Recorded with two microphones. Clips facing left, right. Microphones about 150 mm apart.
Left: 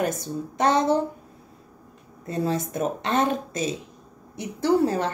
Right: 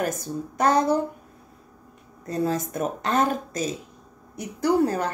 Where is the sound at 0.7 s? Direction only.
25° left (ahead or behind).